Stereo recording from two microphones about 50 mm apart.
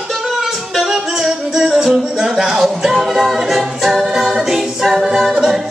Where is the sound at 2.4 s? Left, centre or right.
Centre.